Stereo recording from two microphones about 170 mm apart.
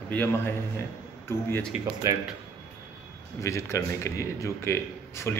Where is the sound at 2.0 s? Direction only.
15° right (ahead or behind).